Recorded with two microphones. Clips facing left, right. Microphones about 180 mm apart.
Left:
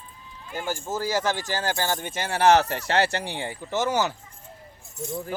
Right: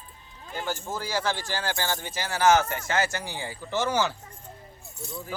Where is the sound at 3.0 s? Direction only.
65° left (ahead or behind).